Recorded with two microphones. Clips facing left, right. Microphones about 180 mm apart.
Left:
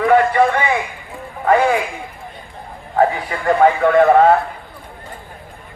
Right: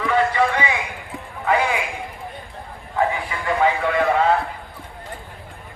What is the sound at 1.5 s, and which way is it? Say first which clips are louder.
Music: left 6 dB; 45° left (ahead or behind).